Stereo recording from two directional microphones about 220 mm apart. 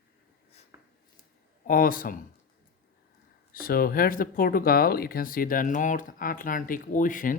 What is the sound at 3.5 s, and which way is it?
Speech, 40° left (ahead or behind).